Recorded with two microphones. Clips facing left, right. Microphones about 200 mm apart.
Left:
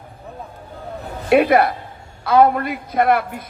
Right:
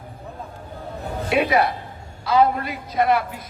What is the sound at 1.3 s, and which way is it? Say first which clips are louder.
A man's voice: left 6 dB; 55° left (ahead or behind).